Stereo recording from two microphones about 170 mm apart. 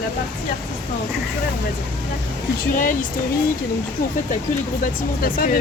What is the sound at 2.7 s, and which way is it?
Speech, 50° left (ahead or behind).